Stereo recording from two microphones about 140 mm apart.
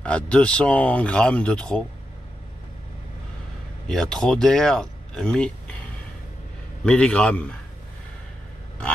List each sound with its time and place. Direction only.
0.0 s speech: 10° left (ahead or behind)
3.8 s speech: 5° left (ahead or behind)
6.8 s speech: 10° left (ahead or behind)